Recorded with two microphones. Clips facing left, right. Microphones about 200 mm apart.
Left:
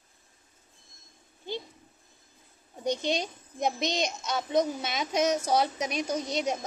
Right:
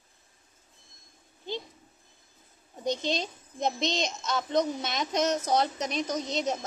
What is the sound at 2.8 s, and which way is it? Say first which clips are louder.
A child's voice: left 1 dB; 10° left (ahead or behind).